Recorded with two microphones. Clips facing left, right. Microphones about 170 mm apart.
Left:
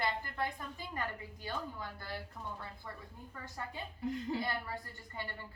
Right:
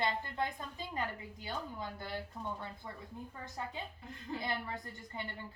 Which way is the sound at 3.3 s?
20° right (ahead or behind).